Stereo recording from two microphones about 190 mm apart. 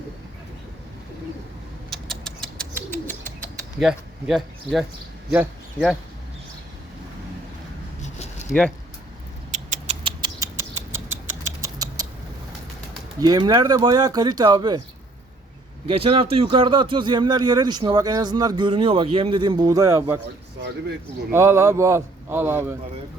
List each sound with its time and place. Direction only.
1.9 s creak: centre (ahead or behind)
2.9 s bird: 10° left (ahead or behind)
3.8 s speech: centre (ahead or behind)
8.0 s a sound: 35° left (ahead or behind)
9.5 s rodents: 40° right (ahead or behind); by 11.2 s 15° right (ahead or behind)
11.6 s a sound: 20° right (ahead or behind)
13.1 s speech: 20° right (ahead or behind)
15.9 s speech: 30° right (ahead or behind)
21.3 s a man's voice: 15° right (ahead or behind)